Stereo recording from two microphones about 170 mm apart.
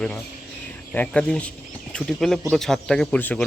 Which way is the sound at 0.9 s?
5° left (ahead or behind).